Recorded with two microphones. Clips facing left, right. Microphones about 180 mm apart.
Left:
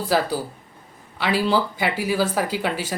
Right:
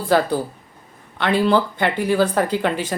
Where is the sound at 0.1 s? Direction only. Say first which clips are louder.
Right 5 dB; 5° left (ahead or behind).